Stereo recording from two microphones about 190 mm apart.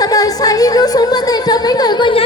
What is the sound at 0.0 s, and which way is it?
Music, 20° left (ahead or behind).